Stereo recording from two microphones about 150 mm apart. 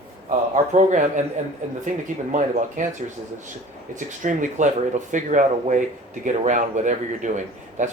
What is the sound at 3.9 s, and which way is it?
A man's voice, 60° right (ahead or behind).